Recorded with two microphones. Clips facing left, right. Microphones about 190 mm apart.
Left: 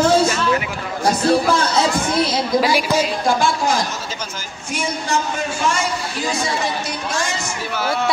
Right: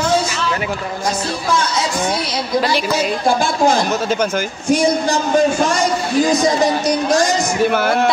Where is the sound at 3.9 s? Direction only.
60° right (ahead or behind).